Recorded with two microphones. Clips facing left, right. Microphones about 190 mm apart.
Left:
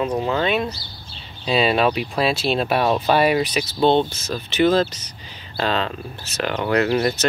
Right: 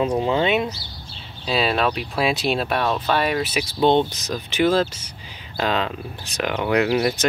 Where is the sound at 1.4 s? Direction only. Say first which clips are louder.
Left 3 dB; centre (ahead or behind).